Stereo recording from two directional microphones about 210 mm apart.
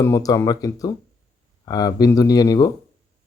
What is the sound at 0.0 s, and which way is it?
Speech, 15° left (ahead or behind).